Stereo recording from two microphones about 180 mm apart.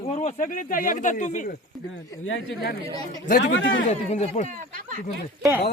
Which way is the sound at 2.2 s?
90° left.